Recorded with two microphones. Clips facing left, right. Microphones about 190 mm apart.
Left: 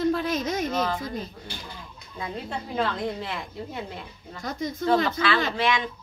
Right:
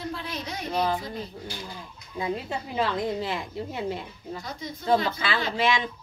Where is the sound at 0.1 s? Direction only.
45° left (ahead or behind).